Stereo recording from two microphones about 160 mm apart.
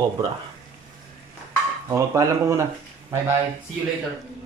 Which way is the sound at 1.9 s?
20° right (ahead or behind).